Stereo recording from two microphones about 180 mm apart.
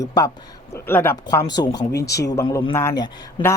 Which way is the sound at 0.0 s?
20° left (ahead or behind).